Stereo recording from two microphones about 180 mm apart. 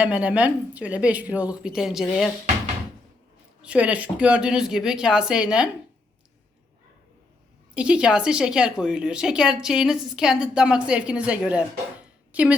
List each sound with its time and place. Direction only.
0.0 s a woman's voice: 10° right (ahead or behind)
3.6 s a woman's voice: 5° right (ahead or behind)
7.7 s a woman's voice: 5° right (ahead or behind)